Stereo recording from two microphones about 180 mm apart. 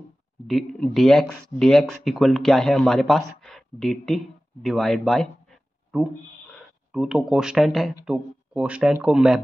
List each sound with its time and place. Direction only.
0.5 s speech: centre (ahead or behind)
4.6 s a sound: centre (ahead or behind)
6.9 s speech: centre (ahead or behind)